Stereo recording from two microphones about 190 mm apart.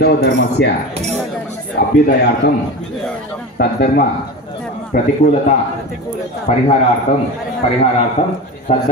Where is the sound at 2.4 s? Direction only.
65° left (ahead or behind).